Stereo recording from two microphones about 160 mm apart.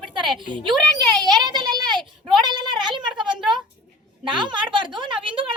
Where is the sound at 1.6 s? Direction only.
25° right (ahead or behind).